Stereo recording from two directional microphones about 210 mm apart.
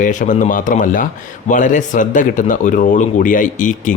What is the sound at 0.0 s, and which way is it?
Speech, 35° left (ahead or behind).